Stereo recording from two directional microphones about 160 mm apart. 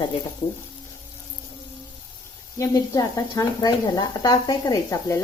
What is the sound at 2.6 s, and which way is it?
Speech, 20° left (ahead or behind).